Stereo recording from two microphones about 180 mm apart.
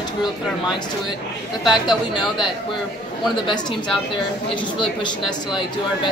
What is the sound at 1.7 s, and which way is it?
Speech, 25° left (ahead or behind).